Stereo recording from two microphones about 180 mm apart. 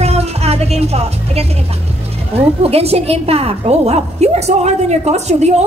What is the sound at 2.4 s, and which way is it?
A woman's voice, 35° right (ahead or behind).